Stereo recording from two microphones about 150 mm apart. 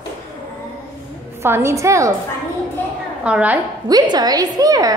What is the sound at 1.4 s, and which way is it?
Speech, 20° right (ahead or behind).